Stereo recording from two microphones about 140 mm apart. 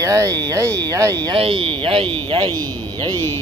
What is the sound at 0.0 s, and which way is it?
Speech, 20° right (ahead or behind).